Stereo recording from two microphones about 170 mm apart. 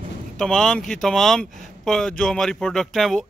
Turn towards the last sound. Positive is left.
turn(degrees=0)  # may be behind; listen again after turning